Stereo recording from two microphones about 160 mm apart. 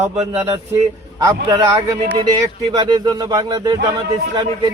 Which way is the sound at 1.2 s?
25° right (ahead or behind).